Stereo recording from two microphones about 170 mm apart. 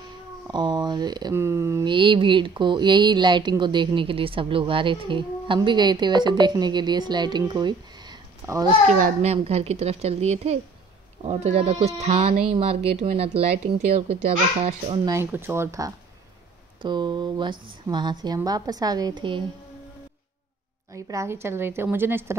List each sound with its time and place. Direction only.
0.5 s speech: 25° right (ahead or behind)
1.9 s speech: 30° right (ahead or behind)
8.8 s speech: 45° right (ahead or behind)
15.0 s a woman's voice: 15° right (ahead or behind)
20.9 s a woman's voice: 20° right (ahead or behind)